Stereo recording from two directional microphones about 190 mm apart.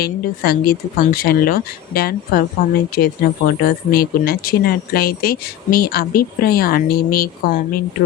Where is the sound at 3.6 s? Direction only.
50° left (ahead or behind).